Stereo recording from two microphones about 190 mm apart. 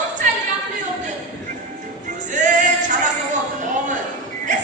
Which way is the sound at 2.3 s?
40° right (ahead or behind).